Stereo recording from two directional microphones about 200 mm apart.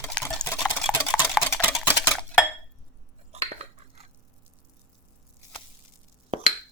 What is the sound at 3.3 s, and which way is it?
Cutlery, 30° right (ahead or behind).